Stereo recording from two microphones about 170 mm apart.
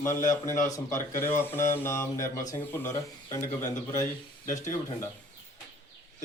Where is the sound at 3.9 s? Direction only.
45° left (ahead or behind).